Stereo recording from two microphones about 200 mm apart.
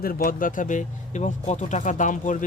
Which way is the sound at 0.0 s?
45° left (ahead or behind).